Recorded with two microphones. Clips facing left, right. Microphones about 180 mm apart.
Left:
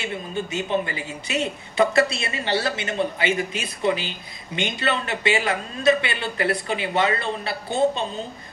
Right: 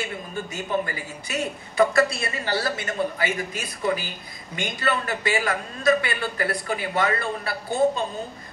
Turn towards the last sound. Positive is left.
turn(degrees=25)  # may be behind; listen again after turning